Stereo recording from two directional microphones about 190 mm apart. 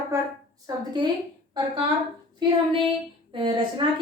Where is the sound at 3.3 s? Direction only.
25° right (ahead or behind).